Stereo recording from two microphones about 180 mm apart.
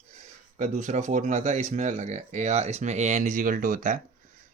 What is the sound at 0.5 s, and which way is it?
Speech, 40° right (ahead or behind).